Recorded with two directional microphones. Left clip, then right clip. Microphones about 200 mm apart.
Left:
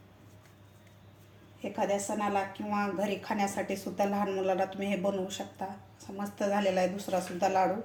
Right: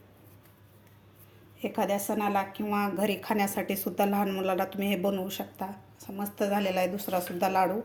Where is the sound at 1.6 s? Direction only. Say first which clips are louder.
Right 2 dB; 40° right (ahead or behind).